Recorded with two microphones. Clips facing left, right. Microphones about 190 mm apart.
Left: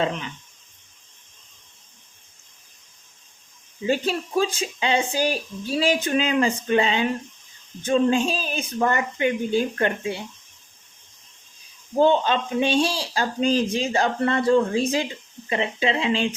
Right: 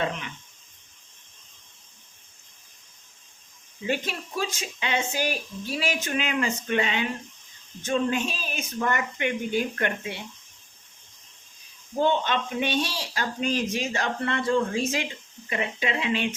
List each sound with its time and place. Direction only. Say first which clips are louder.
3.8 s speech: left 6 dB; 30° left (ahead or behind)
11.9 s speech: left 5 dB; 35° left (ahead or behind)